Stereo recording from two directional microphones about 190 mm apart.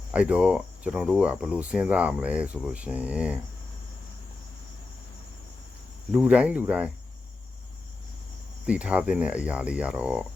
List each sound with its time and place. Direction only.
0.1 s speech: 5° right (ahead or behind)
6.1 s speech: 5° right (ahead or behind)
8.6 s speech: 5° right (ahead or behind)